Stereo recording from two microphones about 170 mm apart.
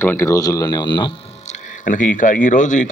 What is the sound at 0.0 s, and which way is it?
Speech, 15° left (ahead or behind).